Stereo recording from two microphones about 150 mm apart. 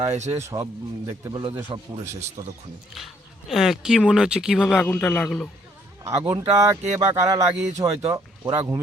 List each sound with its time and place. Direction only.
0.0 s a man's voice: 45° right (ahead or behind)
0.3 s speech: 20° right (ahead or behind)
3.5 s speech: centre (ahead or behind)
6.1 s speech: 20° right (ahead or behind)